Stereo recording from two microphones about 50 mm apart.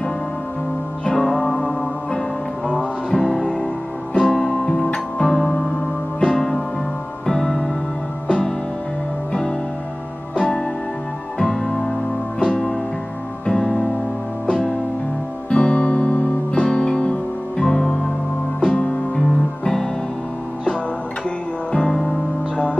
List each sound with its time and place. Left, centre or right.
1.0 s music: centre
4.6 s music: centre
10.3 s music: centre
19.6 s music: centre
21.7 s music: centre